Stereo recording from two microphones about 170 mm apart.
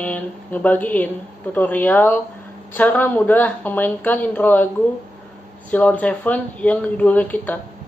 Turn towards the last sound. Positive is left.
turn(degrees=10)  # may be behind; listen again after turning